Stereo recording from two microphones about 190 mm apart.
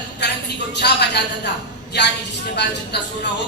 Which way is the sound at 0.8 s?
60° left (ahead or behind).